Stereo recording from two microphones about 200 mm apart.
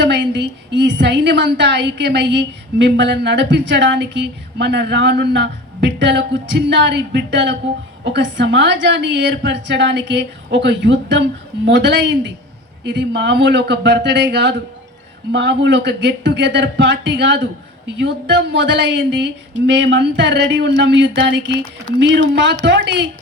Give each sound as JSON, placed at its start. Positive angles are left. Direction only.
{"t": 0.0, "sound": "a woman's voice", "side_deg": -60}